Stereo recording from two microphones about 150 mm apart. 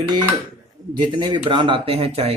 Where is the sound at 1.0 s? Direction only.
30° right (ahead or behind).